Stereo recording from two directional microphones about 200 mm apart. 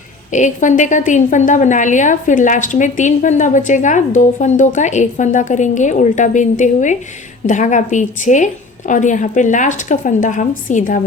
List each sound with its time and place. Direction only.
0.3 s a woman's voice: 40° left (ahead or behind)